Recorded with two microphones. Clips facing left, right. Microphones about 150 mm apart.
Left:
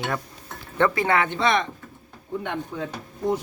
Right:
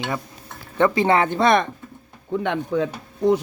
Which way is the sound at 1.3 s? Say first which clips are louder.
Right 5 dB; 50° right (ahead or behind).